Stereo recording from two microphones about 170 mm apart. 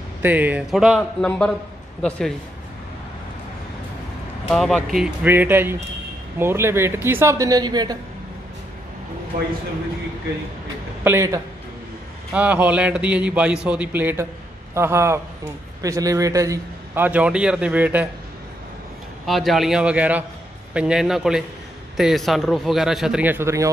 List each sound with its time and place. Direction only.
0.2 s a man's voice: 10° right (ahead or behind); by 2.3 s 5° left (ahead or behind)
4.5 s a man's voice: 5° left (ahead or behind); by 8.0 s 25° right (ahead or behind)
9.3 s speech: 60° right (ahead or behind)
11.1 s a man's voice: 20° right (ahead or behind)
19.2 s a man's voice: centre (ahead or behind); by 23.7 s 15° right (ahead or behind)